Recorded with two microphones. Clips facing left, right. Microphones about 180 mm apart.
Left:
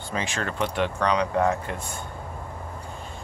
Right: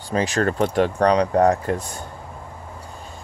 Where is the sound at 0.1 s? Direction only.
40° right (ahead or behind).